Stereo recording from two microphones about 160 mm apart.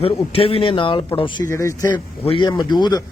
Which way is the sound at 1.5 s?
20° left (ahead or behind).